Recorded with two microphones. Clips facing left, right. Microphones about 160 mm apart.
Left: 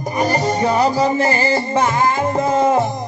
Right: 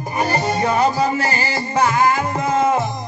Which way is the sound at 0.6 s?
35° left (ahead or behind).